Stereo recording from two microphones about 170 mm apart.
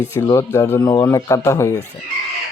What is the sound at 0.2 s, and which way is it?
A man's voice, 20° left (ahead or behind).